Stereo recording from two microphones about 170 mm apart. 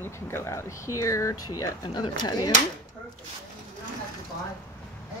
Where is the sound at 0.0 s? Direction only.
15° left (ahead or behind).